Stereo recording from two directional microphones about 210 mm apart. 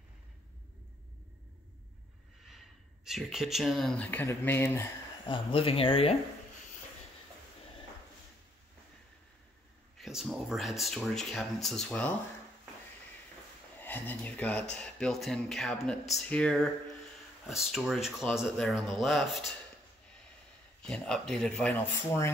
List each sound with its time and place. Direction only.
3.1 s speech: centre (ahead or behind)
5.2 s speech: 25° left (ahead or behind)
9.9 s speech: centre (ahead or behind)
13.7 s speech: 10° left (ahead or behind)
20.8 s speech: 5° left (ahead or behind)